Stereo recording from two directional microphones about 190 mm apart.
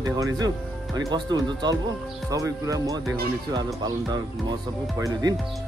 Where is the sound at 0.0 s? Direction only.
20° right (ahead or behind).